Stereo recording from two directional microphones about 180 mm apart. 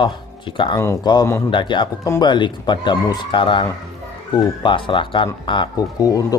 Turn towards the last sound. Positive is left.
turn(degrees=20)  # may be behind; listen again after turning